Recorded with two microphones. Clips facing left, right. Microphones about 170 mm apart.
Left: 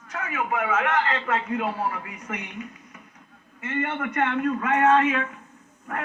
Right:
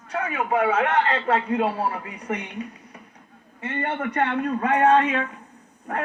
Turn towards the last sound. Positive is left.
turn(degrees=-30)  # may be behind; listen again after turning